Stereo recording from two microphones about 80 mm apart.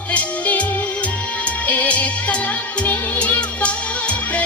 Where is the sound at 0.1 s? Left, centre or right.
Centre.